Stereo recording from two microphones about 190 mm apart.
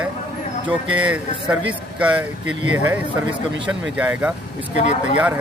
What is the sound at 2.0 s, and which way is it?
Speech, 5° right (ahead or behind).